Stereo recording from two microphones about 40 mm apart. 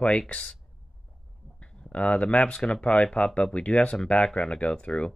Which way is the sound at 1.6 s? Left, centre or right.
Left.